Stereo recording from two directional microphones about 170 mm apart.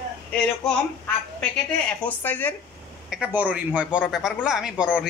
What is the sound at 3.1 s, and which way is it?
Speech, 10° right (ahead or behind).